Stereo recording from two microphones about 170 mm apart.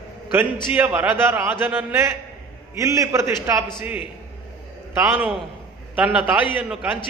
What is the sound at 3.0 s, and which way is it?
A man's voice, 15° right (ahead or behind).